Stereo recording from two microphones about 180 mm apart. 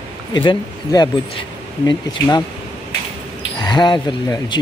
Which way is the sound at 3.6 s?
25° left (ahead or behind).